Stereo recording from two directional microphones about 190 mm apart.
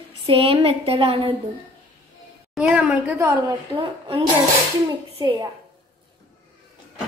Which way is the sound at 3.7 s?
25° right (ahead or behind).